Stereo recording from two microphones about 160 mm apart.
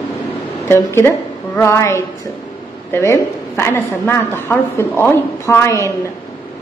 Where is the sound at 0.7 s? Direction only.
15° left (ahead or behind).